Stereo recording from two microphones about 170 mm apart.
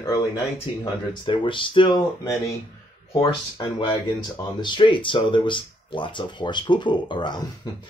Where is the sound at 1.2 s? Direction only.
30° left (ahead or behind).